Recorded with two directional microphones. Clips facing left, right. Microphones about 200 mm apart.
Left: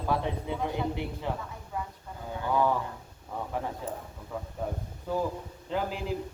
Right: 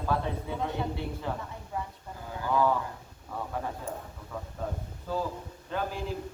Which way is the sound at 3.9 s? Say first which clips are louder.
Left 1 dB; 10° right (ahead or behind).